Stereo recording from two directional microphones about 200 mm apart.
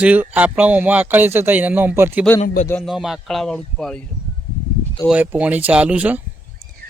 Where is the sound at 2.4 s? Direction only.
35° left (ahead or behind).